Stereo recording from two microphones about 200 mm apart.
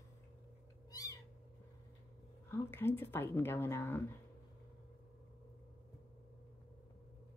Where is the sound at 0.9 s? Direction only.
15° left (ahead or behind).